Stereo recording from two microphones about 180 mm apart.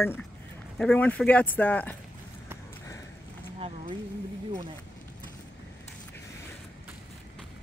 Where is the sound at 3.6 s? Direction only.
30° right (ahead or behind).